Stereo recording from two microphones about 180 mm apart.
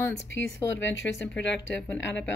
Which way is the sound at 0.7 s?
90° left.